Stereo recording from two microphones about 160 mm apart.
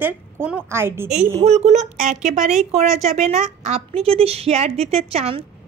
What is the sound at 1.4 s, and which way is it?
A woman's voice, 45° right (ahead or behind).